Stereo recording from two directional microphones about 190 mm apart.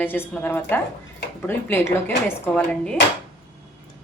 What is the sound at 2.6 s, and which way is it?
Dishes, 5° left (ahead or behind).